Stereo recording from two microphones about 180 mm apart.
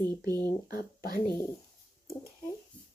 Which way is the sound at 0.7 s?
55° left (ahead or behind).